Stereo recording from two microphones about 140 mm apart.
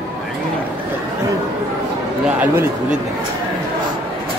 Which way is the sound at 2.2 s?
10° right (ahead or behind).